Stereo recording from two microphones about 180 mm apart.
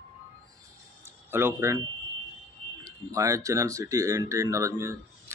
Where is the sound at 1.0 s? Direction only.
15° right (ahead or behind).